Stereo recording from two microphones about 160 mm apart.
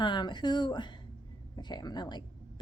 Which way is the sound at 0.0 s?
30° left (ahead or behind).